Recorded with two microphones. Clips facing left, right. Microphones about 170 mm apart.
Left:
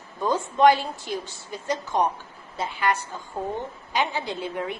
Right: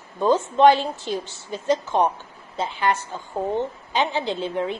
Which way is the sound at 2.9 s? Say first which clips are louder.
Right 2 dB; 25° right (ahead or behind).